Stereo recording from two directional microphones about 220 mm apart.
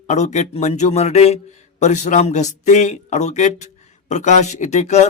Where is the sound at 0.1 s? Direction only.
30° left (ahead or behind).